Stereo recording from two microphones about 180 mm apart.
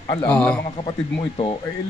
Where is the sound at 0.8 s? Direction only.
30° left (ahead or behind).